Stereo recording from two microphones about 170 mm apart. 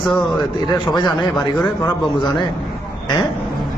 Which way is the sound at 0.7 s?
25° left (ahead or behind).